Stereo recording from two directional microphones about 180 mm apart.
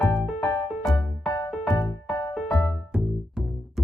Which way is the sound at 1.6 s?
15° left (ahead or behind).